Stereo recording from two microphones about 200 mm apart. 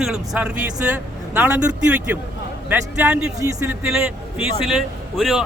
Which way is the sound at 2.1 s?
10° right (ahead or behind).